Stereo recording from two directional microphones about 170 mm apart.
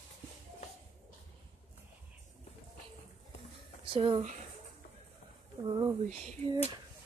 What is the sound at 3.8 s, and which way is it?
Speech, 30° right (ahead or behind).